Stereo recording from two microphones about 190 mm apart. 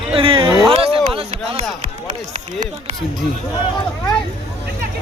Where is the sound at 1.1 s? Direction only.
30° right (ahead or behind).